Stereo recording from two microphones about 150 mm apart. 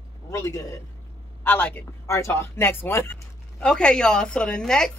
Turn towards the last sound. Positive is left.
turn(degrees=5)  # may be behind; listen again after turning